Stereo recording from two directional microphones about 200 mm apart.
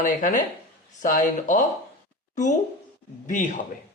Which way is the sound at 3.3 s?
40° left (ahead or behind).